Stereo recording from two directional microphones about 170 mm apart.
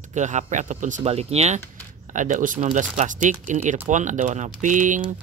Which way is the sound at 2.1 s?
50° right (ahead or behind).